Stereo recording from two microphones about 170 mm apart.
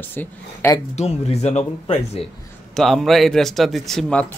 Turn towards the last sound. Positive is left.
turn(degrees=5)  # may be behind; listen again after turning